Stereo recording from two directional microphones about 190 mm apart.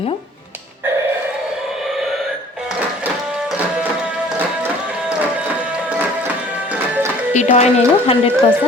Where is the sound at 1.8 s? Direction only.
Centre (ahead or behind).